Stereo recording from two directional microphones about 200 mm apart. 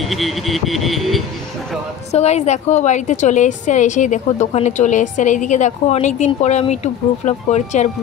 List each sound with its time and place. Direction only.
0.1 s speech: centre (ahead or behind)
2.1 s a woman's voice: 35° left (ahead or behind)